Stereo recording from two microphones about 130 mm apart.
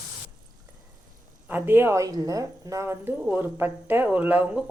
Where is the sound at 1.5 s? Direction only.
15° right (ahead or behind).